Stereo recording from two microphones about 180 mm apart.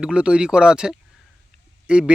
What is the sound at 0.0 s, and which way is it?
Speech, 5° right (ahead or behind).